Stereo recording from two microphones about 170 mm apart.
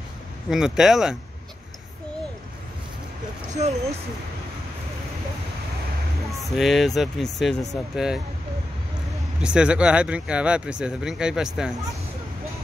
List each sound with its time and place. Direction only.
0.5 s speech: 5° right (ahead or behind)
3.6 s speech: 40° right (ahead or behind)
6.5 s speech: centre (ahead or behind)
9.4 s speech: 5° right (ahead or behind)